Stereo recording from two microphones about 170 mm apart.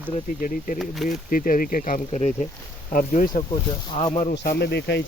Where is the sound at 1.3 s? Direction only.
55° left (ahead or behind).